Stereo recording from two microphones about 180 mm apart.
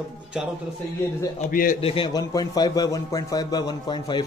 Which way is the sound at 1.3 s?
50° left (ahead or behind).